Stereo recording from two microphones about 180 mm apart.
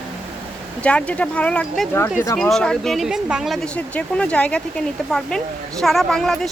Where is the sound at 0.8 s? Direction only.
5° left (ahead or behind).